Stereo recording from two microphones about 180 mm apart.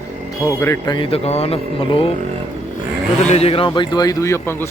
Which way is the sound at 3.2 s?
35° left (ahead or behind).